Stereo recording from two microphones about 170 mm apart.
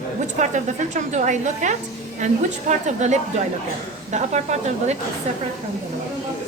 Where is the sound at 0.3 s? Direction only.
45° right (ahead or behind).